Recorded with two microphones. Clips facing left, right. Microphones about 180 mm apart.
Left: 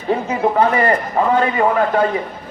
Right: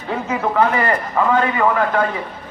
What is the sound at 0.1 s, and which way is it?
A man's voice, 25° left (ahead or behind).